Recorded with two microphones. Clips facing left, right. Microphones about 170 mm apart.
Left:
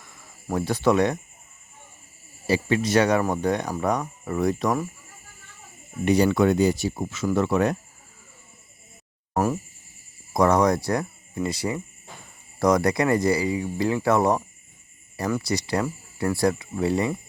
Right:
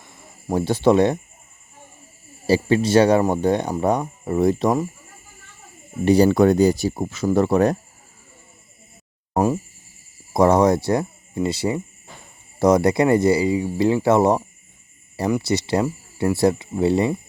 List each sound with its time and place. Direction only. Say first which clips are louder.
0.0 s speech: right 5 dB; 25° right (ahead or behind)
2.5 s speech: right 5 dB; 30° right (ahead or behind)
6.1 s speech: right 5 dB; 35° right (ahead or behind)
9.3 s speech: right 4 dB; 20° right (ahead or behind)